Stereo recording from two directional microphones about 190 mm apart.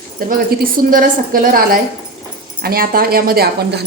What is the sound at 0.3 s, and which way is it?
A woman's voice, 50° right (ahead or behind).